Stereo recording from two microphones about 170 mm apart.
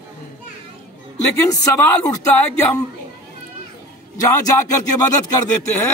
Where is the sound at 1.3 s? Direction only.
20° left (ahead or behind).